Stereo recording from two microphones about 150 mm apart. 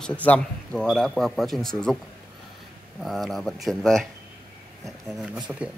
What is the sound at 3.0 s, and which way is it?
Speech, centre (ahead or behind).